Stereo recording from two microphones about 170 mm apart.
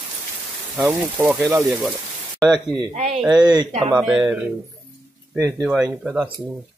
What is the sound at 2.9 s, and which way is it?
Speech, 40° right (ahead or behind).